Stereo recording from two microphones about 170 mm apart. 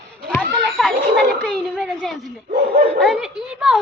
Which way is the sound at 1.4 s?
5° left (ahead or behind).